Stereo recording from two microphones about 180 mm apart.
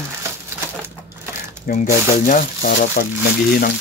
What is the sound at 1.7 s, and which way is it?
Speech, 55° left (ahead or behind).